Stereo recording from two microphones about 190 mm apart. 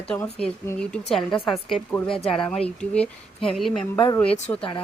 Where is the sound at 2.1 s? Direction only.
30° left (ahead or behind).